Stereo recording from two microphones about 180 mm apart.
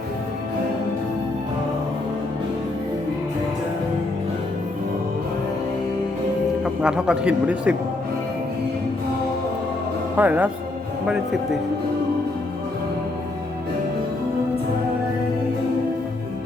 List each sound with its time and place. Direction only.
6.8 s speech: 5° right (ahead or behind)
10.2 s speech: 10° right (ahead or behind)